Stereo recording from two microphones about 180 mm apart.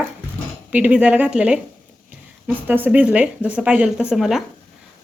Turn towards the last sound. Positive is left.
turn(degrees=0)  # may be behind; listen again after turning